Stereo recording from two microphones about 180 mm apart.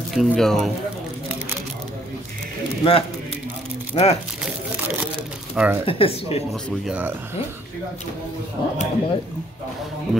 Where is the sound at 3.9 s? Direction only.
35° left (ahead or behind).